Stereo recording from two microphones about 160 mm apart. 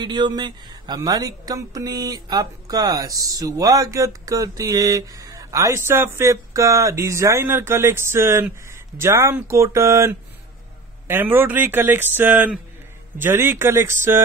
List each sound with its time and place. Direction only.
0.0 s a woman's voice: 25° right (ahead or behind)